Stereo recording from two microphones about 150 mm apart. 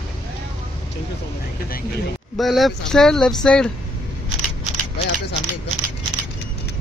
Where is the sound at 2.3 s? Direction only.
Centre (ahead or behind).